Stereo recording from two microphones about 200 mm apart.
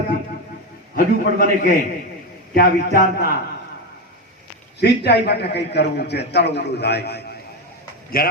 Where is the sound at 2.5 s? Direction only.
50° left (ahead or behind).